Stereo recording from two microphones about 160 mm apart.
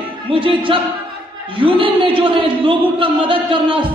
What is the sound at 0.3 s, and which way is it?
A man's voice, 35° right (ahead or behind).